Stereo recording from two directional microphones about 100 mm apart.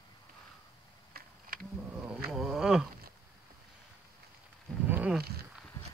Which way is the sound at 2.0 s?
10° right (ahead or behind).